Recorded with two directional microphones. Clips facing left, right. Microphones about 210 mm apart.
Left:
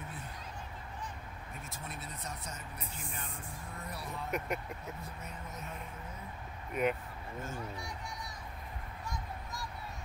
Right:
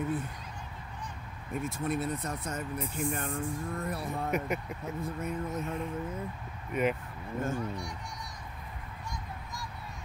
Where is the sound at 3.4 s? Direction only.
50° right (ahead or behind).